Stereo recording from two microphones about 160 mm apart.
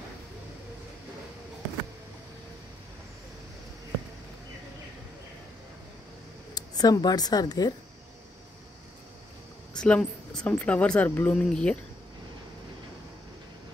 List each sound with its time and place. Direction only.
6.5 s speech: 25° left (ahead or behind)
9.8 s speech: 5° left (ahead or behind)